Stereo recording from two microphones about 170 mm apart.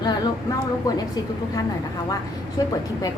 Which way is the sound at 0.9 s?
20° left (ahead or behind).